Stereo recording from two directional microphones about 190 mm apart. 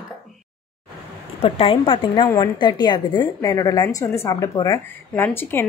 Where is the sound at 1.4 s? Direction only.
30° left (ahead or behind).